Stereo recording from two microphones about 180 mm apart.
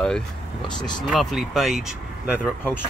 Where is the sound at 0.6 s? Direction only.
25° left (ahead or behind).